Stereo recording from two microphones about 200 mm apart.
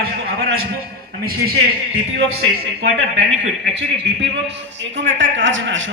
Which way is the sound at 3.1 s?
60° right (ahead or behind).